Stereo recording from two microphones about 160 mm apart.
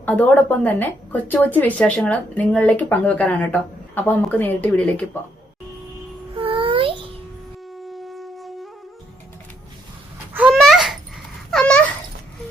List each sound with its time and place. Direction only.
0.0 s a woman's voice: 10° left (ahead or behind)
6.3 s child singing: 35° right (ahead or behind)
7.9 s flute: centre (ahead or behind)
10.3 s babbling: 5° right (ahead or behind)
11.5 s a sound: 5° left (ahead or behind)